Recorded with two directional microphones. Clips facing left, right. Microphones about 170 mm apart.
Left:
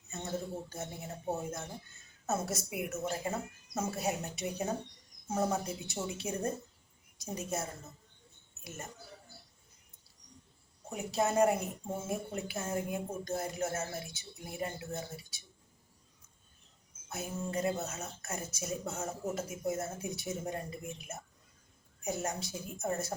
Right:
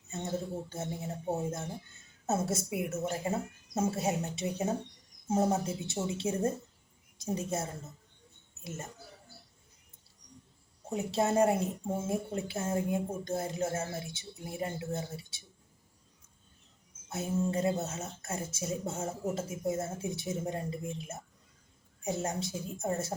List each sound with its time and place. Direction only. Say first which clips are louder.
0.1 s speech: right 2 dB; 25° right (ahead or behind)
10.8 s speech: right 2 dB; 25° right (ahead or behind)
17.1 s speech: right 6 dB; 25° right (ahead or behind)